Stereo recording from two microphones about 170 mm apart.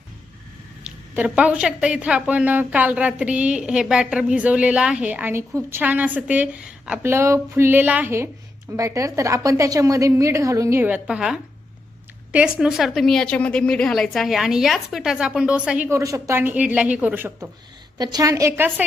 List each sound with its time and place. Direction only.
0.9 s a woman's voice: 10° right (ahead or behind)
15.9 s a woman's voice: 15° right (ahead or behind)
17.9 s a woman's voice: 25° right (ahead or behind)